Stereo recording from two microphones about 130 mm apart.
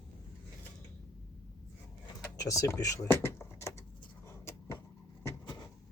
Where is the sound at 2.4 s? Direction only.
25° left (ahead or behind).